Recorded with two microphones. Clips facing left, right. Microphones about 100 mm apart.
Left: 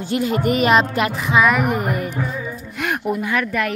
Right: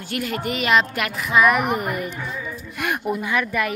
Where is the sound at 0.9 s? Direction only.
30° left (ahead or behind).